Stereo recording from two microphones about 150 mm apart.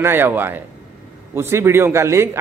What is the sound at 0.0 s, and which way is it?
A man's voice, 15° right (ahead or behind).